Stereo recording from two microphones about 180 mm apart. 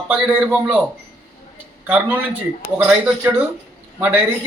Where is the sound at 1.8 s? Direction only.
10° right (ahead or behind).